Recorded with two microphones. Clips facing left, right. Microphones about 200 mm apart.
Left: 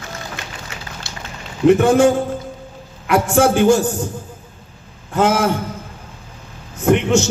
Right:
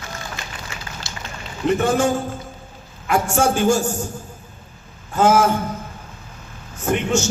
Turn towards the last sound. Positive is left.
turn(degrees=65)  # may be behind; listen again after turning